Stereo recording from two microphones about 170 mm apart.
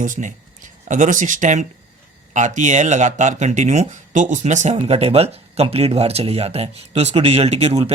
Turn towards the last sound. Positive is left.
turn(degrees=-35)  # may be behind; listen again after turning